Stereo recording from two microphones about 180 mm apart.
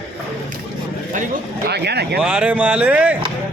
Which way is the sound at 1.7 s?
65° right (ahead or behind).